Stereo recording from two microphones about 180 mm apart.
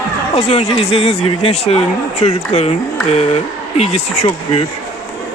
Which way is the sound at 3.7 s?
35° left (ahead or behind).